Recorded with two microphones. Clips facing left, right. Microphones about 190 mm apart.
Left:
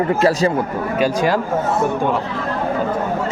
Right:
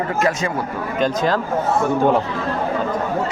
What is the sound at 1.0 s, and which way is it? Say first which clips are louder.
Speech: left 1 dB; 10° left (ahead or behind).